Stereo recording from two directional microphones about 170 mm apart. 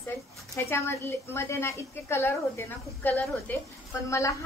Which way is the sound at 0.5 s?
15° left (ahead or behind).